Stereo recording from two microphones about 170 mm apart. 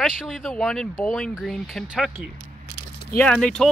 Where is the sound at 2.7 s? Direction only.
65° left (ahead or behind).